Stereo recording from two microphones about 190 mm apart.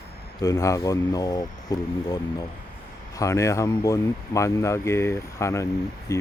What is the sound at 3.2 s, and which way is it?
Speech, 15° left (ahead or behind).